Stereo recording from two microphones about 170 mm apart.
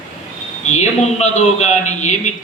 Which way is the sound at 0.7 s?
40° left (ahead or behind).